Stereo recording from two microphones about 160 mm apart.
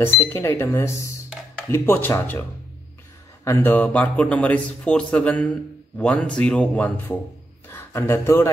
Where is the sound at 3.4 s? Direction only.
10° left (ahead or behind).